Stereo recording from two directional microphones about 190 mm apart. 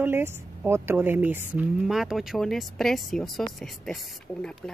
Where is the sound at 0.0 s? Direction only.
10° right (ahead or behind).